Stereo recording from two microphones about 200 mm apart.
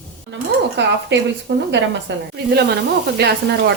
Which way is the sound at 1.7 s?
60° right (ahead or behind).